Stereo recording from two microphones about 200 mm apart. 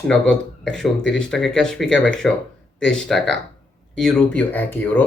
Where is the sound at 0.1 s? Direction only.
5° left (ahead or behind).